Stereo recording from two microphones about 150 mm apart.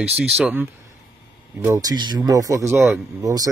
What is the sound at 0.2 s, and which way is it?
Speech, 5° right (ahead or behind).